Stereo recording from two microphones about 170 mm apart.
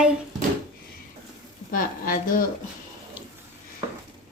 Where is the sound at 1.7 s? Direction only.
55° left (ahead or behind).